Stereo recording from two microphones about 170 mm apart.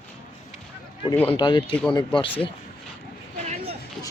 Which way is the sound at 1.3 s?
30° left (ahead or behind).